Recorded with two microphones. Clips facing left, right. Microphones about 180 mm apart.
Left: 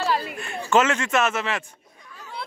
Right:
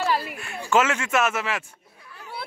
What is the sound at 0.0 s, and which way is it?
A man's voice, 5° right (ahead or behind).